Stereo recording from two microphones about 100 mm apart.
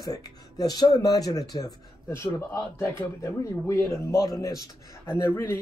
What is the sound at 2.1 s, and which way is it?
Speech, 25° left (ahead or behind).